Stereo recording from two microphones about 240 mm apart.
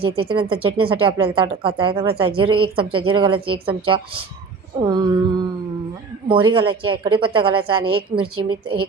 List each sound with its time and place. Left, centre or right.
0.0 s speech: right
4.8 s a sound: centre
6.2 s speech: right